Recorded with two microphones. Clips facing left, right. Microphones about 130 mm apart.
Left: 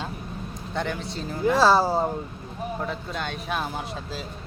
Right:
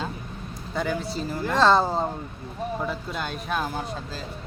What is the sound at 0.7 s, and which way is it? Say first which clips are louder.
Speech: right 2 dB; 5° right (ahead or behind).